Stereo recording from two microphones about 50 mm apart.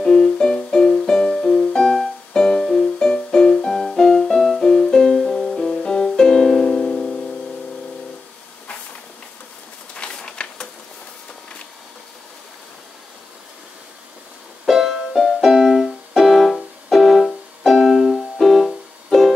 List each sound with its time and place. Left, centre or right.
0.0 s music: centre
9.9 s a sound: centre
14.7 s keyboard: centre